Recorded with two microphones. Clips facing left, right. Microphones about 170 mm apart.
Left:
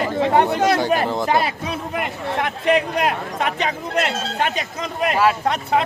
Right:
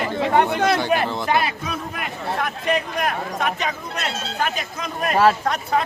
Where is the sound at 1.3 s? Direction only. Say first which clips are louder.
Left 2 dB; 30° left (ahead or behind).